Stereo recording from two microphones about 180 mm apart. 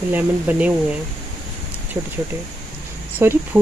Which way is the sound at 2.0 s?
15° right (ahead or behind).